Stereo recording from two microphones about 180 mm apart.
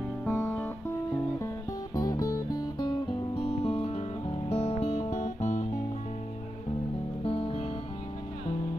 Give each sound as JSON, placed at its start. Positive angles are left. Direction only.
{"t": 0.2, "sound": "music", "side_deg": 5}
{"t": 2.0, "sound": "music", "side_deg": 20}
{"t": 7.2, "sound": "music", "side_deg": 30}